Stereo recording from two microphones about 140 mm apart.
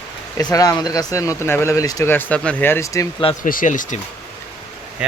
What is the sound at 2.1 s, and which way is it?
Speech, 10° left (ahead or behind).